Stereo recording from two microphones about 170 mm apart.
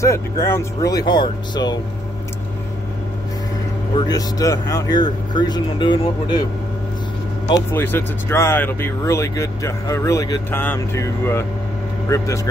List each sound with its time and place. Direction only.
0.0 s speech: 15° left (ahead or behind)
3.9 s speech: 25° left (ahead or behind)
7.7 s speech: 10° left (ahead or behind)